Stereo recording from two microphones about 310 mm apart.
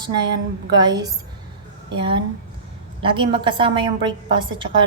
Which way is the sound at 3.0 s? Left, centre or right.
Centre.